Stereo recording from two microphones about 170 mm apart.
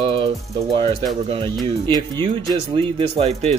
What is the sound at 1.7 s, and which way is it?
Speech, 25° right (ahead or behind).